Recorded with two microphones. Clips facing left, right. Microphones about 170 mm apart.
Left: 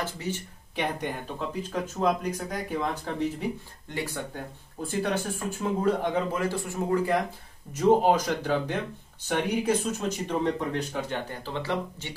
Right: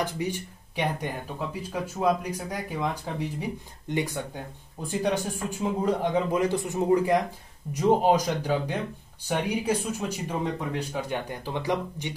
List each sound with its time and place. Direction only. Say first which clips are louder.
0.0 s speech: right 3 dB; 15° right (ahead or behind)